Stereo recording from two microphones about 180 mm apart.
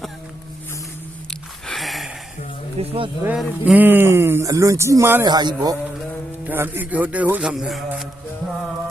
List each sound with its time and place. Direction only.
1.6 s a sound: centre (ahead or behind)
2.8 s speech: 35° right (ahead or behind)
3.2 s speech: 5° right (ahead or behind); by 5.7 s 25° right (ahead or behind)
6.4 s speech: 10° right (ahead or behind)